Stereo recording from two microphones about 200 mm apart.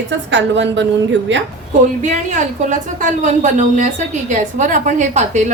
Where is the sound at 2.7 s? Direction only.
40° right (ahead or behind).